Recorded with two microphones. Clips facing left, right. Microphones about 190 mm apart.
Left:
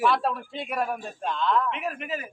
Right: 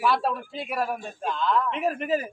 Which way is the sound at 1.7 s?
35° right (ahead or behind).